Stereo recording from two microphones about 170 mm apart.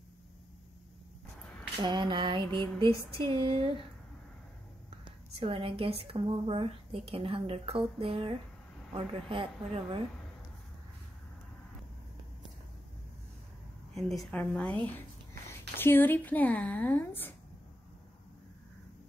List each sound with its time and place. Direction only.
1.8 s female singing: 25° right (ahead or behind)
5.0 s a woman's voice: 30° right (ahead or behind)
13.9 s a woman's voice: centre (ahead or behind)